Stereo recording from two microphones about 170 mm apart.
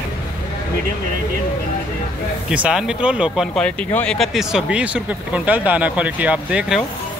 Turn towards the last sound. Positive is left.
turn(degrees=-5)  # may be behind; listen again after turning